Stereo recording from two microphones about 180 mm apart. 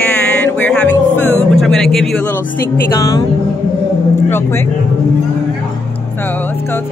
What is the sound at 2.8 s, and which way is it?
Speech, 20° left (ahead or behind).